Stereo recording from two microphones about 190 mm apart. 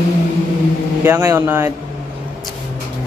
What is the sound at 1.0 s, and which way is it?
Speech, 15° right (ahead or behind).